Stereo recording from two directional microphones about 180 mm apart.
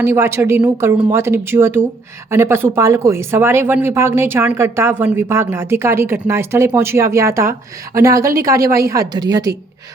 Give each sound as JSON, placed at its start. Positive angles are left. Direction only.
{"t": 0.0, "sound": "a woman's voice", "side_deg": -15}